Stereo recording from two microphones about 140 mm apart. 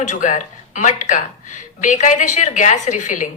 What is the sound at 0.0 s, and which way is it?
A woman's voice, 60° left (ahead or behind).